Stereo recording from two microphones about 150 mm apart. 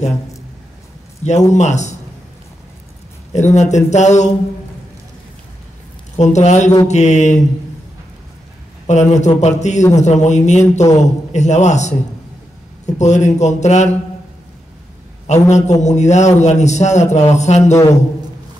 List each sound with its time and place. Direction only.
1.2 s a man's voice: 50° left (ahead or behind)
3.3 s a man's voice: 50° left (ahead or behind)
6.1 s a man's voice: 50° left (ahead or behind)
8.8 s a man's voice: 50° left (ahead or behind)
15.4 s a man's voice: 50° left (ahead or behind)